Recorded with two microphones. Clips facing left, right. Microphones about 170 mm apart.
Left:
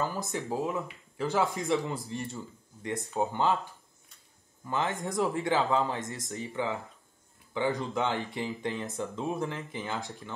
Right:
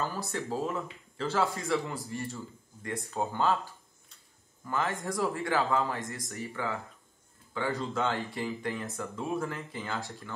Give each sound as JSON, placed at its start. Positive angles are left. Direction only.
{"t": 0.0, "sound": "speech", "side_deg": 15}
{"t": 4.6, "sound": "speech", "side_deg": 20}